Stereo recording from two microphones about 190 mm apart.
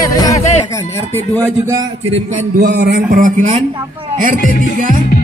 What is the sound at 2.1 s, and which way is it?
Speech, 40° right (ahead or behind).